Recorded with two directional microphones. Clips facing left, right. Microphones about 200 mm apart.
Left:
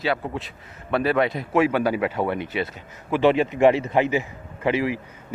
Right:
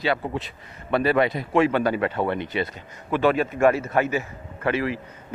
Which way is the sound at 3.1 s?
20° left (ahead or behind).